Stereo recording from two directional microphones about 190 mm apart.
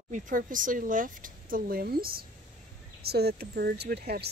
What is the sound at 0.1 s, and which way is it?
Speech, 45° right (ahead or behind).